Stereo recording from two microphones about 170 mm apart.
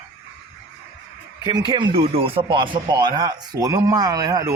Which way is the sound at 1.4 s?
25° right (ahead or behind).